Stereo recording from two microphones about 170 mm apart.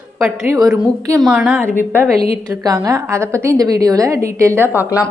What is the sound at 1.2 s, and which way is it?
Speech, 5° right (ahead or behind).